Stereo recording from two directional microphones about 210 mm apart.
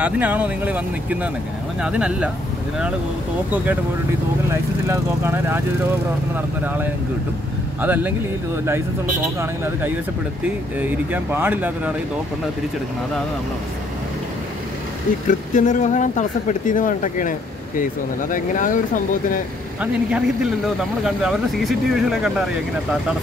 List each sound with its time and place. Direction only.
0.0 s speech: 5° right (ahead or behind)
4.5 s speech: 10° right (ahead or behind)
6.6 s speech: 10° right (ahead or behind)
10.8 s speech: 10° right (ahead or behind)
15.2 s speech: 35° left (ahead or behind)
19.8 s speech: 5° right (ahead or behind)